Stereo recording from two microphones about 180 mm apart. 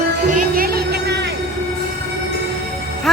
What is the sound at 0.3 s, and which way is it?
Music, 50° right (ahead or behind).